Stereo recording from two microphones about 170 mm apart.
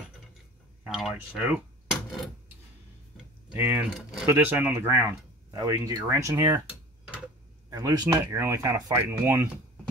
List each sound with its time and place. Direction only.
0.8 s speech: 5° right (ahead or behind)
2.0 s a sound: centre (ahead or behind)
3.5 s speech: 10° right (ahead or behind)
7.7 s speech: 25° right (ahead or behind)